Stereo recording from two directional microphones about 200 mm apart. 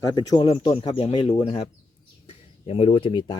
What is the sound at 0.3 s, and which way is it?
Speech, 30° left (ahead or behind).